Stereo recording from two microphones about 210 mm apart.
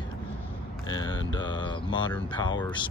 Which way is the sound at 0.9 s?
20° left (ahead or behind).